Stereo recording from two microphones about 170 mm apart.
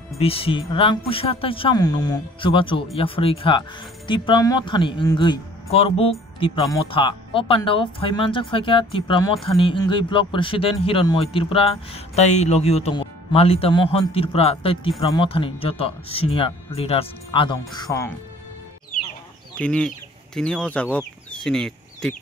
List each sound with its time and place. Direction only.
0.2 s a man's voice: 35° left (ahead or behind)
17.7 s speech: 20° left (ahead or behind)
19.6 s speech: 5° left (ahead or behind)